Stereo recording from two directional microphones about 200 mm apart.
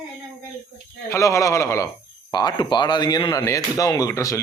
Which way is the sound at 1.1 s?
15° left (ahead or behind).